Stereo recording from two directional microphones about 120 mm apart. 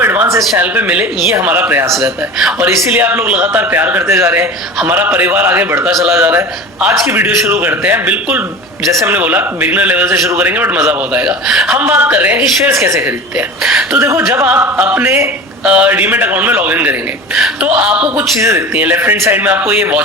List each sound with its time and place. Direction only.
0.0 s a sound: 15° right (ahead or behind)
0.6 s a man's voice: 10° right (ahead or behind)
1.9 s speech: centre (ahead or behind)
2.9 s a man's voice: 15° right (ahead or behind)
8.9 s a man's voice: 25° right (ahead or behind)
9.1 s a man's voice: 15° right (ahead or behind)
13.6 s speech: 5° right (ahead or behind)
14.0 s a man's voice: 20° right (ahead or behind)